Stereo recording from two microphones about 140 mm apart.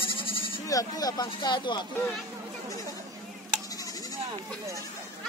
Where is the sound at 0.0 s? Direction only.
40° left (ahead or behind).